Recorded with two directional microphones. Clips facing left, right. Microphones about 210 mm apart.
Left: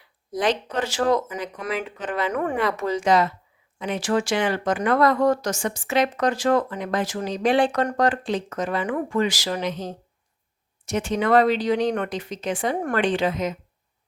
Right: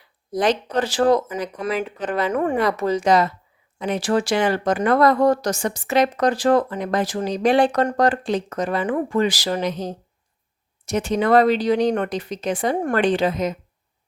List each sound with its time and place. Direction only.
0.3 s speech: 40° right (ahead or behind)